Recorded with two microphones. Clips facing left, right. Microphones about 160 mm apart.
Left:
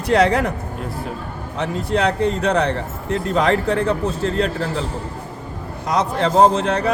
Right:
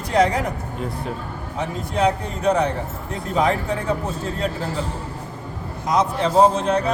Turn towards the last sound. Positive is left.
turn(degrees=75)  # may be behind; listen again after turning